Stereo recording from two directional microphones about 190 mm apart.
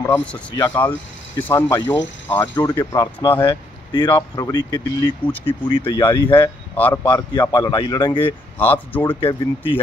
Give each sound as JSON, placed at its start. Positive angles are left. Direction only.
{"t": 0.6, "sound": "speech", "side_deg": 10}
{"t": 6.8, "sound": "speech", "side_deg": 10}
{"t": 8.5, "sound": "speech", "side_deg": 10}
{"t": 9.2, "sound": "speech", "side_deg": 25}